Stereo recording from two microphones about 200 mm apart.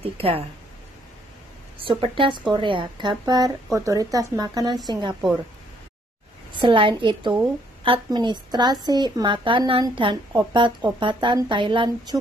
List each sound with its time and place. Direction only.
0.0 s a woman's voice: 30° right (ahead or behind)
1.8 s a woman's voice: 25° right (ahead or behind)
6.5 s a woman's voice: 25° right (ahead or behind)